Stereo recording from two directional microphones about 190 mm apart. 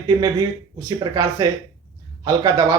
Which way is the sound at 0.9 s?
20° right (ahead or behind).